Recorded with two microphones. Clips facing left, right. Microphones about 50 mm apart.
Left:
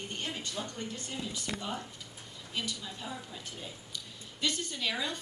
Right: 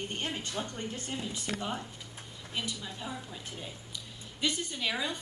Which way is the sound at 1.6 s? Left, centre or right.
Centre.